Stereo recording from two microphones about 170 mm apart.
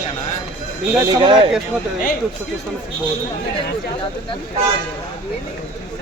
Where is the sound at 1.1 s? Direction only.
30° right (ahead or behind).